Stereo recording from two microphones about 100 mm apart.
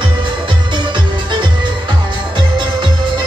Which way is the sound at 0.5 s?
55° right (ahead or behind).